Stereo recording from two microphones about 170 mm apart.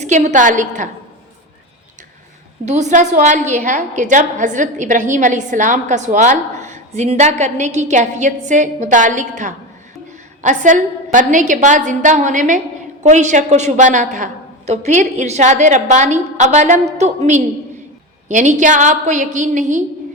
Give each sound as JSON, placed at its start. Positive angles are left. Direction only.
{"t": 0.0, "sound": "a woman's voice", "side_deg": -45}
{"t": 2.6, "sound": "a woman's voice", "side_deg": -45}